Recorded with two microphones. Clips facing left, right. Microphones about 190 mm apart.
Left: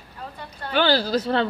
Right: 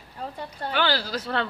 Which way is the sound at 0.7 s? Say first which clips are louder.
Left 6 dB; 30° left (ahead or behind).